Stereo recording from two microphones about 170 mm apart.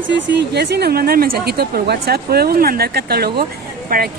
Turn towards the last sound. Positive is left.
turn(degrees=-60)  # may be behind; listen again after turning